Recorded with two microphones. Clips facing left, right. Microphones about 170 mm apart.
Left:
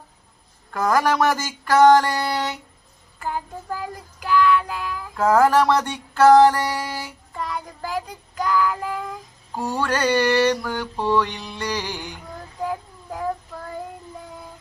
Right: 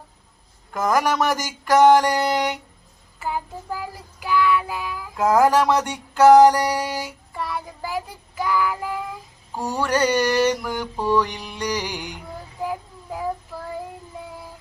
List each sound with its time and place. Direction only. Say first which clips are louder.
0.7 s mantra: left 1 dB; 15° right (ahead or behind)
3.2 s child singing: right 1 dB; 10° right (ahead or behind)
9.6 s mantra: right 2 dB; 15° right (ahead or behind)
12.6 s child singing: left 1 dB; 5° right (ahead or behind)